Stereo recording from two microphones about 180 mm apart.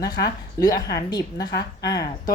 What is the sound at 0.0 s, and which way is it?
Speech, 20° left (ahead or behind).